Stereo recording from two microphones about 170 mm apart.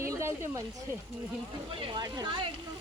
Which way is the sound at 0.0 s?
15° right (ahead or behind).